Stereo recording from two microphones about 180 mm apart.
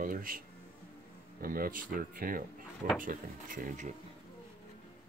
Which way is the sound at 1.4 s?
55° right (ahead or behind).